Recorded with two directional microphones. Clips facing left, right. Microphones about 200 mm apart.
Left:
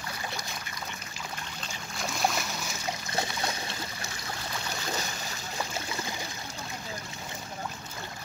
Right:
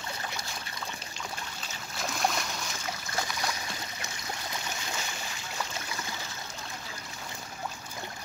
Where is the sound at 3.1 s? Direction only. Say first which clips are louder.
Left 1 dB; 25° left (ahead or behind).